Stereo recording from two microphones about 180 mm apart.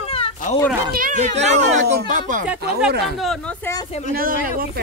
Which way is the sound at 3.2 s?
Centre (ahead or behind).